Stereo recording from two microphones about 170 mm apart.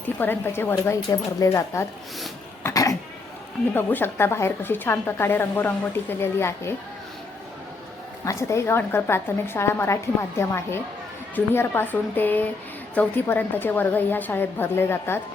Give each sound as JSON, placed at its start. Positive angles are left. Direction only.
{"t": 0.2, "sound": "speech", "side_deg": 10}
{"t": 2.6, "sound": "cough", "side_deg": 20}
{"t": 3.8, "sound": "speech", "side_deg": 10}
{"t": 8.2, "sound": "speech", "side_deg": 20}